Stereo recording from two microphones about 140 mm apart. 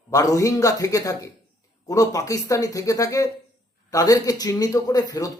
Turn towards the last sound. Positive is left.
turn(degrees=25)  # may be behind; listen again after turning